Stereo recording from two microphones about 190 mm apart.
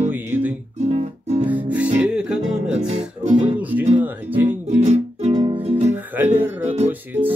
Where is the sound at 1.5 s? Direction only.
10° right (ahead or behind).